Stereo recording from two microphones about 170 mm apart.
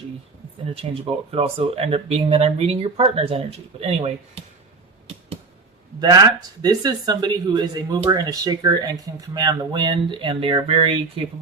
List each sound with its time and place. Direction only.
0.7 s speech: 35° right (ahead or behind)
6.0 s speech: 25° right (ahead or behind)